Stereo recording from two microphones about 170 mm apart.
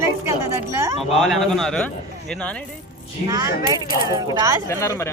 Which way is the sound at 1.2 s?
Centre (ahead or behind).